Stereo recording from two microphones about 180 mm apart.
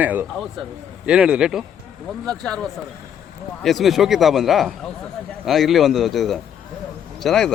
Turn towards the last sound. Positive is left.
turn(degrees=0)  # may be behind; listen again after turning